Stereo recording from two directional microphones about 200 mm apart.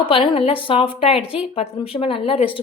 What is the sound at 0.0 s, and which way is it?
Speech, 25° left (ahead or behind).